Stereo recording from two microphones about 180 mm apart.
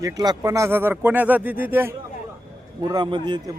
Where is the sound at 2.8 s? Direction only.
25° right (ahead or behind).